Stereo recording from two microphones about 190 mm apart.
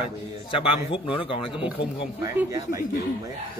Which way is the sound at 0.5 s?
30° left (ahead or behind).